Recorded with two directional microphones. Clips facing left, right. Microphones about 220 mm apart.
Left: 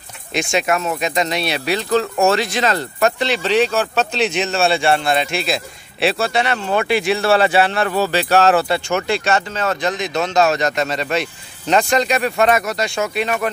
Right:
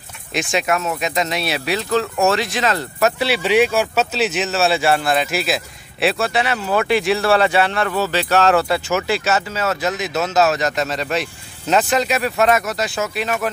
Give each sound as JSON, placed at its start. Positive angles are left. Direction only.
{"t": 0.3, "sound": "speech", "side_deg": 0}
{"t": 7.3, "sound": "speech", "side_deg": 30}
{"t": 8.1, "sound": "speech", "side_deg": 10}
{"t": 8.6, "sound": "speech", "side_deg": 0}